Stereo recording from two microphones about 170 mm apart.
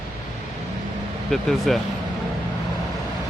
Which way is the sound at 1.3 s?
Centre (ahead or behind).